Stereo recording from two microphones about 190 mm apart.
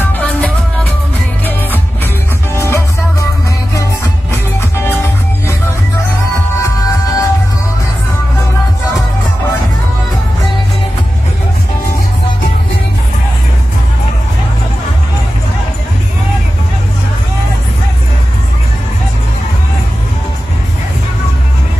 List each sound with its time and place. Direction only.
0.0 s music: 10° left (ahead or behind)
2.5 s music: 15° left (ahead or behind)
4.6 s music: 10° left (ahead or behind)
6.6 s music: 15° left (ahead or behind)